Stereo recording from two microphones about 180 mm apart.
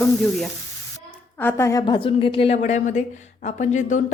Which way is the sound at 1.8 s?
30° left (ahead or behind).